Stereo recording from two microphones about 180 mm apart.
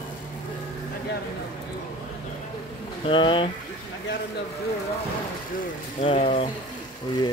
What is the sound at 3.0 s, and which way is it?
Speech, 25° left (ahead or behind).